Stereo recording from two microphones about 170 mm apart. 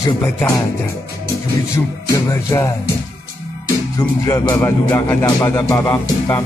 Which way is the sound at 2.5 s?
20° left (ahead or behind).